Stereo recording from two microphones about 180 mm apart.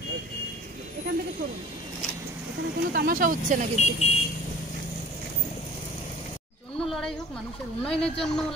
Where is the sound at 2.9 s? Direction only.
55° right (ahead or behind).